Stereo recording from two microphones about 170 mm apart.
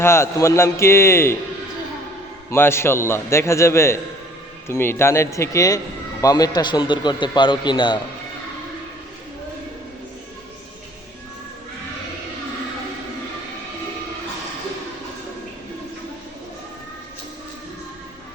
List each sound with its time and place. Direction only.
0.0 s a man's voice: 15° left (ahead or behind)
2.5 s a man's voice: 15° left (ahead or behind)